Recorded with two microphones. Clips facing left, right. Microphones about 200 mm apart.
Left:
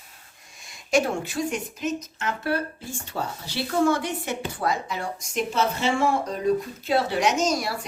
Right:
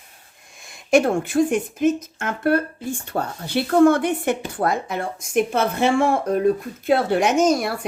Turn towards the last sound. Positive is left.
turn(degrees=-55)  # may be behind; listen again after turning